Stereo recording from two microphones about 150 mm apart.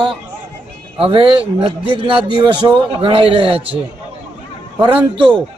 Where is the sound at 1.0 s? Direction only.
35° right (ahead or behind).